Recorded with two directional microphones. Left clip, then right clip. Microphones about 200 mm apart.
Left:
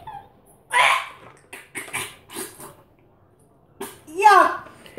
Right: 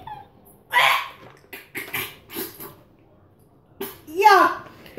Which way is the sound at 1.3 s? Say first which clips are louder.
Right 1 dB; centre (ahead or behind).